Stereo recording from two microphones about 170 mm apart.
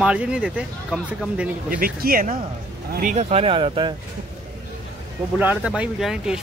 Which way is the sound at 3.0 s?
45° right (ahead or behind).